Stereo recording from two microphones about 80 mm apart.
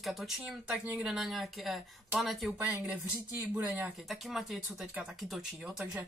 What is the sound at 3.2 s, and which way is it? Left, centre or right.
Speech, right.